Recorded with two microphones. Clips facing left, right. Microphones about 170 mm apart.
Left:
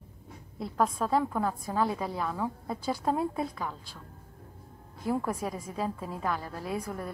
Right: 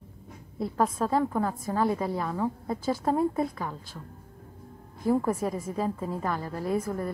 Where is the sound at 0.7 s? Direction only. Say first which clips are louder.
Right 1 dB; 10° right (ahead or behind).